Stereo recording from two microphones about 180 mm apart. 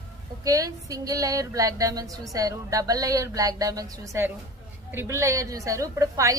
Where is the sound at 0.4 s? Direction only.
20° right (ahead or behind).